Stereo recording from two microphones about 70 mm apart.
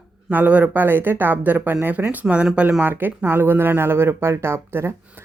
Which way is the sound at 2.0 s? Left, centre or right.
Centre.